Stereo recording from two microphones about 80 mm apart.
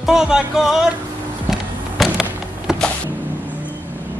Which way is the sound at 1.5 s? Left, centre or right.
Centre.